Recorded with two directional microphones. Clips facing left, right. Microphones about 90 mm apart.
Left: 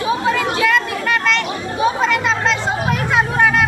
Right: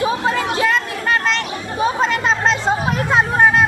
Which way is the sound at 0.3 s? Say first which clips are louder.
Left 3 dB; 30° right (ahead or behind).